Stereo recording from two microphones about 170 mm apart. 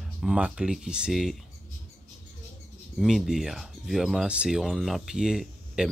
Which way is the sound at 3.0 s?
Centre (ahead or behind).